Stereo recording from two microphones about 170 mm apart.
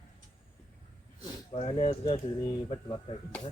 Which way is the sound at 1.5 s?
35° left (ahead or behind).